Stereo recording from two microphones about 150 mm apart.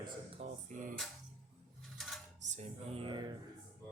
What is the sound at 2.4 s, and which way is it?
Music, 50° right (ahead or behind).